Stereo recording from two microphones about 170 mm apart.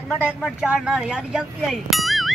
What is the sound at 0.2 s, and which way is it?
Speech, 5° left (ahead or behind).